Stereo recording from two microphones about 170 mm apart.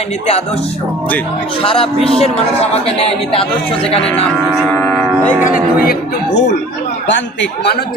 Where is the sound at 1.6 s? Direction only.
30° left (ahead or behind).